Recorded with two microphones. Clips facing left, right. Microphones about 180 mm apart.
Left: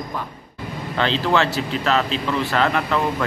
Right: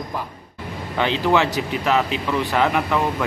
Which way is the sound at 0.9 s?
15° right (ahead or behind).